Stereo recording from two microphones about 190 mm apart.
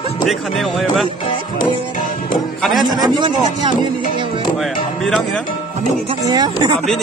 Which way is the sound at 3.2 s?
25° right (ahead or behind).